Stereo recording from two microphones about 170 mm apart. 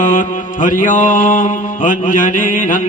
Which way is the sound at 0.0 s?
50° left (ahead or behind).